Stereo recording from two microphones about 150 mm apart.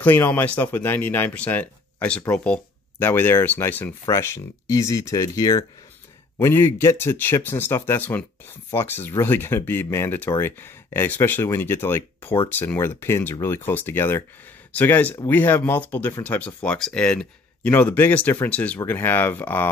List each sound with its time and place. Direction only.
0.0 s speech: 10° left (ahead or behind)